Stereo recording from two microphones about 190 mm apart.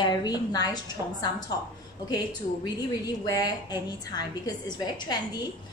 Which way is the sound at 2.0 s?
20° left (ahead or behind).